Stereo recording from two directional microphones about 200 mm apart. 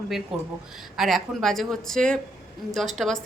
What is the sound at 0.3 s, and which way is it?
A woman's voice, 5° right (ahead or behind).